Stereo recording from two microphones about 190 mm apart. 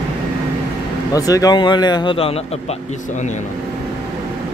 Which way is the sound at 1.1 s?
20° left (ahead or behind).